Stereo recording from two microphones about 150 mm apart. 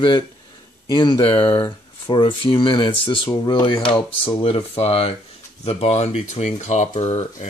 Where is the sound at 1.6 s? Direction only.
25° left (ahead or behind).